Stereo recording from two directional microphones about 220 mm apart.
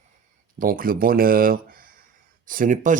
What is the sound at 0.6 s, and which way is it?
Speech, 40° right (ahead or behind).